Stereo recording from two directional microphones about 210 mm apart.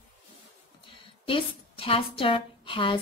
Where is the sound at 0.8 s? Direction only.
25° left (ahead or behind).